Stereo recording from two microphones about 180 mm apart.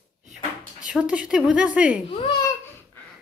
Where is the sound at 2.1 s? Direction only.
25° left (ahead or behind).